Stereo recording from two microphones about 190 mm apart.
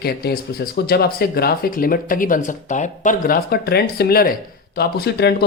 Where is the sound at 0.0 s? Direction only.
55° left (ahead or behind).